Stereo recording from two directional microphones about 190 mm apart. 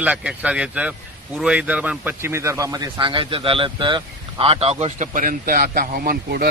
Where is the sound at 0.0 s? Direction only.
5° right (ahead or behind).